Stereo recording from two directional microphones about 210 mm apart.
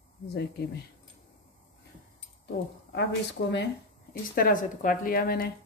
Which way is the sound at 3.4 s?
50° left (ahead or behind).